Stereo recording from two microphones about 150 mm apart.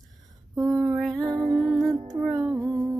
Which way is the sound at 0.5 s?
20° right (ahead or behind).